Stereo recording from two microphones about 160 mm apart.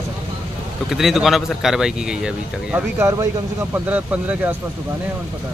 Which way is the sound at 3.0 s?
20° right (ahead or behind).